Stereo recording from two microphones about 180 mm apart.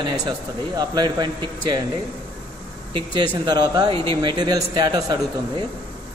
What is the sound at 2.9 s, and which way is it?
Speech, 25° right (ahead or behind).